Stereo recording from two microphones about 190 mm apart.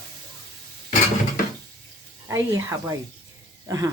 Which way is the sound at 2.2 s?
15° right (ahead or behind).